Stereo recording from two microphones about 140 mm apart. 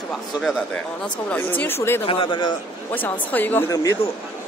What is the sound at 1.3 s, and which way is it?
Speech, 10° left (ahead or behind).